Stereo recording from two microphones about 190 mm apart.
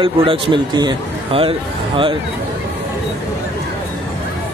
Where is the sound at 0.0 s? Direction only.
25° right (ahead or behind).